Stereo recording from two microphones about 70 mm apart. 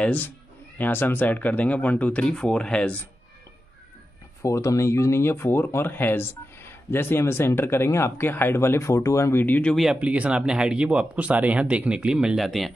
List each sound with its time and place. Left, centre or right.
0.0 s a man's voice: left
4.4 s speech: left
9.4 s speech: left
9.9 s speech: centre